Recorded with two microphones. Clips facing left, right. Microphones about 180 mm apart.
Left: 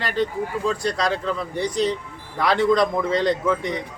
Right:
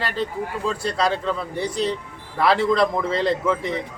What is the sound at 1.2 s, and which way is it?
A man's voice, 5° right (ahead or behind).